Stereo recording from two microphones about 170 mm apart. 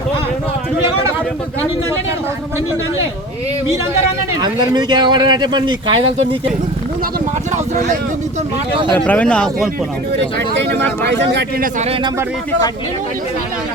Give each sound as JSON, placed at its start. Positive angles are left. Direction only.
{"t": 4.4, "sound": "speech", "side_deg": -25}
{"t": 9.0, "sound": "speech", "side_deg": 5}
{"t": 10.6, "sound": "speech", "side_deg": -90}